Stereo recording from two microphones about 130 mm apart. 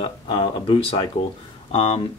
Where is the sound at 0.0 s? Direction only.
40° left (ahead or behind).